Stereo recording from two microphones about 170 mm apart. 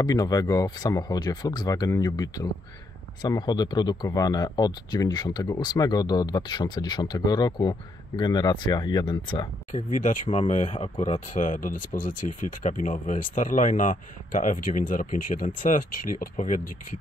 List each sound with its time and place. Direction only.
0.0 s speech: 20° left (ahead or behind)
9.7 s speech: 50° left (ahead or behind)